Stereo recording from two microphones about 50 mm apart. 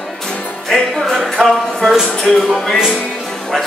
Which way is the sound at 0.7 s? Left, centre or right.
Centre.